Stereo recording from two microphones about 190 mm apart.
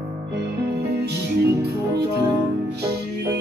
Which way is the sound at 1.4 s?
60° right (ahead or behind).